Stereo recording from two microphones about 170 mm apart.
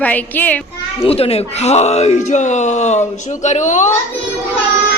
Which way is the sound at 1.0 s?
35° left (ahead or behind).